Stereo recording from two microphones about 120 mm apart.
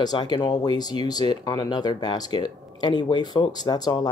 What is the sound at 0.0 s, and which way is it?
Speech, 35° left (ahead or behind).